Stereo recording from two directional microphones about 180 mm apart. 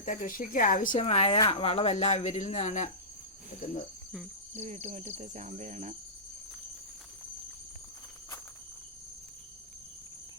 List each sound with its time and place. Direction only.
0.0 s a woman's voice: 45° left (ahead or behind)
0.9 s speech: 35° left (ahead or behind)
4.5 s cricket: 40° right (ahead or behind)